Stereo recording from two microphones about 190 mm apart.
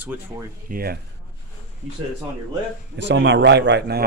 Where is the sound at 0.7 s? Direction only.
55° right (ahead or behind).